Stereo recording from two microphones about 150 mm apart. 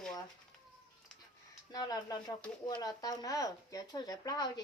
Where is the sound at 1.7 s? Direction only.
25° left (ahead or behind).